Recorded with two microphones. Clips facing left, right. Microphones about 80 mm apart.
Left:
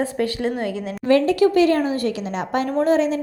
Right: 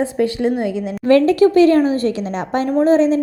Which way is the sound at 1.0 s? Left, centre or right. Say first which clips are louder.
Right 4 dB; right.